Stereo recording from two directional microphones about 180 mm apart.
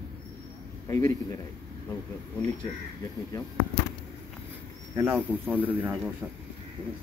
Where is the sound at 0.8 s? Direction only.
20° left (ahead or behind).